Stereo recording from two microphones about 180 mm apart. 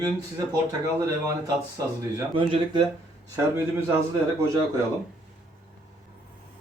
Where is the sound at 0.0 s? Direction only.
20° right (ahead or behind).